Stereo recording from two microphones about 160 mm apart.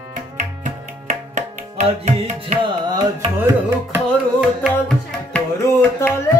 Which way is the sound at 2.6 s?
30° right (ahead or behind).